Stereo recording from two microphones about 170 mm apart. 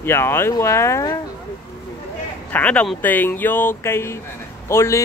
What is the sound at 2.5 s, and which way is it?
Speech, 10° left (ahead or behind).